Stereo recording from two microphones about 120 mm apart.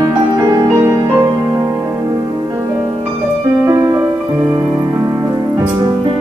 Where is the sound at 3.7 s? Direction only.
30° right (ahead or behind).